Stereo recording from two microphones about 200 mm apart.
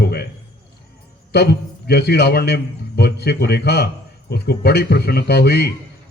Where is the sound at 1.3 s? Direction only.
55° left (ahead or behind).